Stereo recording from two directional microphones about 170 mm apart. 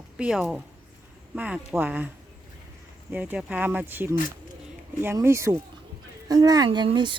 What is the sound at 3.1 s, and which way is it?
Speech, 10° right (ahead or behind).